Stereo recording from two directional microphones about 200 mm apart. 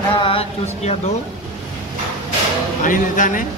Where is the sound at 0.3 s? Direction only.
30° left (ahead or behind).